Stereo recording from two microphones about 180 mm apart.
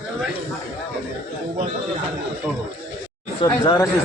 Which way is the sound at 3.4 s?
20° left (ahead or behind).